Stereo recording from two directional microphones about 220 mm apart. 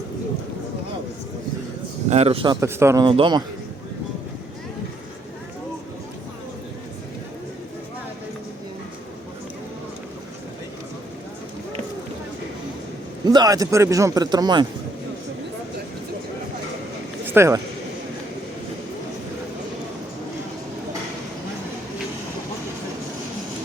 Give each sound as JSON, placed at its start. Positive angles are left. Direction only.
{"t": 2.0, "sound": "speech", "side_deg": -30}
{"t": 13.2, "sound": "speech", "side_deg": -15}
{"t": 17.3, "sound": "speech", "side_deg": -10}